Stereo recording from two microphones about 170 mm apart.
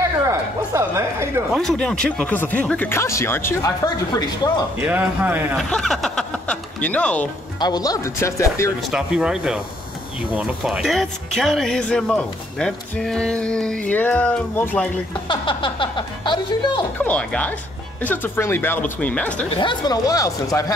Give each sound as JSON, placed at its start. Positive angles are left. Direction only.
{"t": 0.0, "sound": "speech", "side_deg": -15}
{"t": 1.6, "sound": "speech", "side_deg": 5}
{"t": 4.7, "sound": "speech", "side_deg": -10}
{"t": 5.6, "sound": "speech", "side_deg": 0}
{"t": 7.6, "sound": "speech", "side_deg": 20}
{"t": 8.9, "sound": "speech", "side_deg": -5}
{"t": 15.2, "sound": "speech", "side_deg": 30}
{"t": 17.0, "sound": "speech", "side_deg": 10}
{"t": 19.5, "sound": "speech", "side_deg": 30}